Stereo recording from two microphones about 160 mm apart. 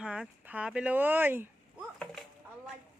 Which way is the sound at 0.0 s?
5° right (ahead or behind).